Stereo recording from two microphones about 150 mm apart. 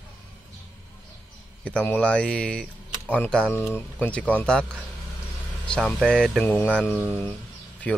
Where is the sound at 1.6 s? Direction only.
10° left (ahead or behind).